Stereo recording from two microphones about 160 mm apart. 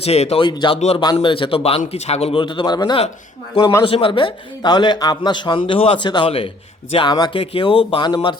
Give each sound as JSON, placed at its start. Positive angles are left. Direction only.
{"t": 0.0, "sound": "a man's voice", "side_deg": 40}
{"t": 0.4, "sound": "a man's voice", "side_deg": 30}
{"t": 3.8, "sound": "a man's voice", "side_deg": 35}